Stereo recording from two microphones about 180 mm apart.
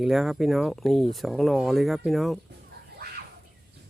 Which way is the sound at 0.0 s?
Centre (ahead or behind).